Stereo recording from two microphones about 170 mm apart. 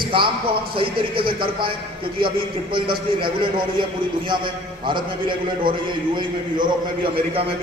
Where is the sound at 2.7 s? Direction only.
30° right (ahead or behind).